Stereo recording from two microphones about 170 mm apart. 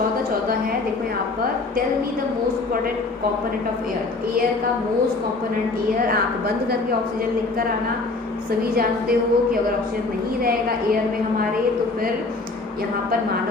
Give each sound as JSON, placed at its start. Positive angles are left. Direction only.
{"t": 8.7, "sound": "a woman's voice", "side_deg": -60}